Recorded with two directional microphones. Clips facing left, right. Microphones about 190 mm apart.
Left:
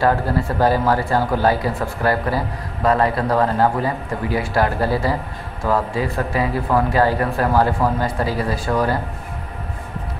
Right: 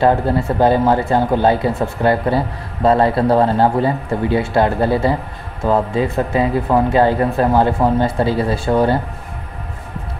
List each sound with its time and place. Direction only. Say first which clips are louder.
0.0 s speech: right 4 dB; 20° right (ahead or behind)